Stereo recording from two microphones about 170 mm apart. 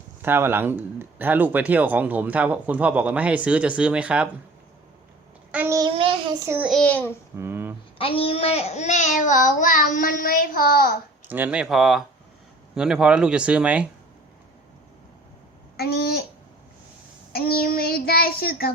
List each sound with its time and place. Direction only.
0.2 s speech: 15° right (ahead or behind)
5.5 s child singing: 10° right (ahead or behind)
6.0 s child singing: 30° right (ahead or behind)
6.4 s speech: 15° right (ahead or behind)
6.7 s a child's voice: 5° left (ahead or behind)
7.3 s speech: 15° right (ahead or behind)
7.9 s a child's voice: 30° left (ahead or behind); by 11.0 s 60° left (ahead or behind)
11.3 s speech: 10° right (ahead or behind)
15.8 s a sound: 70° left (ahead or behind)
17.3 s child singing: 65° left (ahead or behind)